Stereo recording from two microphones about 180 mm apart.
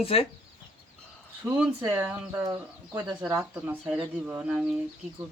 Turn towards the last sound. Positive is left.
turn(degrees=-5)  # may be behind; listen again after turning